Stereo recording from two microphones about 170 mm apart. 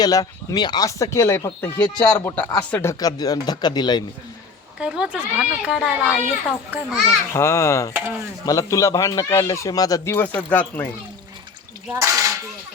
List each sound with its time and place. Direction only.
0.0 s a child's voice: 20° left (ahead or behind)
3.0 s speech: 20° left (ahead or behind)
4.8 s a child's voice: 5° right (ahead or behind)
7.3 s a child's voice: 15° left (ahead or behind)
11.9 s speech: 15° right (ahead or behind)